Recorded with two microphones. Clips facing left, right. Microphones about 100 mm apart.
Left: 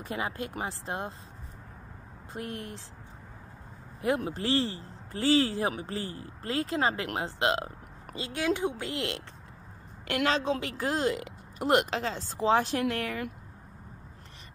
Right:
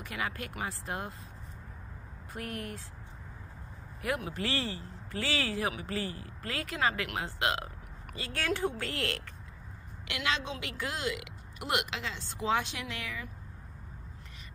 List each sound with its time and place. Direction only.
0.0 s speech: 30° left (ahead or behind)
2.3 s speech: 25° left (ahead or behind)
4.0 s speech: 30° left (ahead or behind)
8.3 s speech: 15° left (ahead or behind)
10.0 s speech: 45° left (ahead or behind)